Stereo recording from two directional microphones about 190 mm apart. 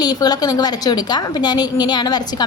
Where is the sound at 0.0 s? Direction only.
20° left (ahead or behind).